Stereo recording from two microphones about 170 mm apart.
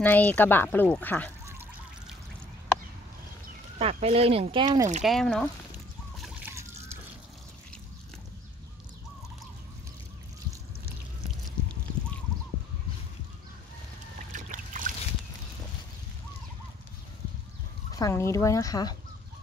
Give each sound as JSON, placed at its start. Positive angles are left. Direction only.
{"t": 0.0, "sound": "speech", "side_deg": 10}
{"t": 3.7, "sound": "speech", "side_deg": -35}
{"t": 5.0, "sound": "speech", "side_deg": 0}
{"t": 14.3, "sound": "boat", "side_deg": -50}
{"t": 17.9, "sound": "speech", "side_deg": 20}